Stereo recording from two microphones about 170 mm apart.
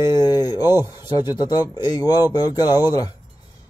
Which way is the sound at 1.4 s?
25° left (ahead or behind).